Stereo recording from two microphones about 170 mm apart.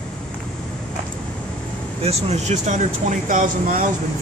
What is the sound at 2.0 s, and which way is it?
Speech, 40° right (ahead or behind).